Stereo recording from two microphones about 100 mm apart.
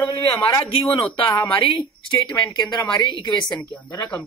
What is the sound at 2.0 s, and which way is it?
A woman's voice, 45° left (ahead or behind).